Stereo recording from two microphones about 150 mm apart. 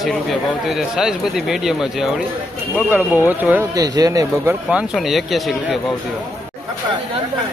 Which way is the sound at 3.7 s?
25° right (ahead or behind).